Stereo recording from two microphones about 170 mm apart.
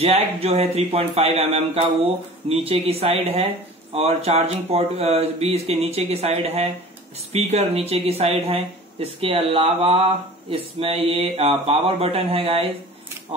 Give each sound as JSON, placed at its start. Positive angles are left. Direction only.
{"t": 0.0, "sound": "speech", "side_deg": -35}